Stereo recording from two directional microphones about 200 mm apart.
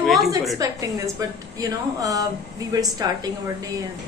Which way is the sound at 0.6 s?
15° right (ahead or behind).